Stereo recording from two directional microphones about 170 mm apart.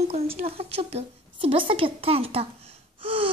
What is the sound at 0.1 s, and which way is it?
Speech, 35° right (ahead or behind).